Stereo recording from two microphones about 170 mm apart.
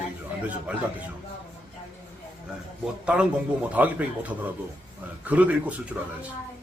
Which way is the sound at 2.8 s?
5° right (ahead or behind).